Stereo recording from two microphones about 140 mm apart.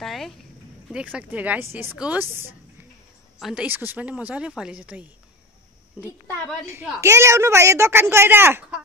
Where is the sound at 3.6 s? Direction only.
15° right (ahead or behind).